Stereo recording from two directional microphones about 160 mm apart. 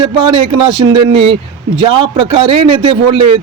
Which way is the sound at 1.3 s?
30° right (ahead or behind).